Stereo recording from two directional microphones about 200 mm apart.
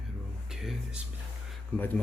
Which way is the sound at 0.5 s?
Centre (ahead or behind).